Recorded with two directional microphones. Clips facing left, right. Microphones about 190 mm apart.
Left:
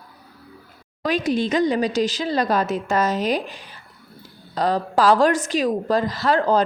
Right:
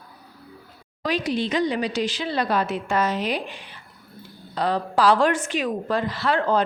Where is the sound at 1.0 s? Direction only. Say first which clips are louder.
Left 3 dB; 50° left (ahead or behind).